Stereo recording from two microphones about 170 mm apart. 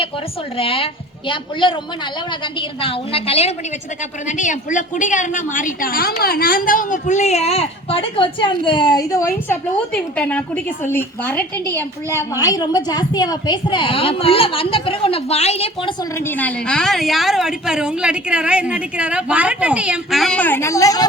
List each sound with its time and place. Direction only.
0.5 s a woman's voice: 35° left (ahead or behind)
4.3 s a woman's voice: 45° left (ahead or behind)
16.1 s a woman's voice: 10° left (ahead or behind)